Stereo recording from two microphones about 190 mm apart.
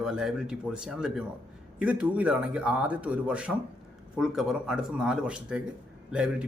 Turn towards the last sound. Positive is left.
turn(degrees=-5)  # may be behind; listen again after turning